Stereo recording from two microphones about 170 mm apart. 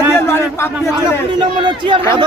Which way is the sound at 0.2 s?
15° left (ahead or behind).